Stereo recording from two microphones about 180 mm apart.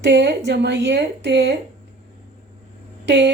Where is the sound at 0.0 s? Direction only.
70° right (ahead or behind).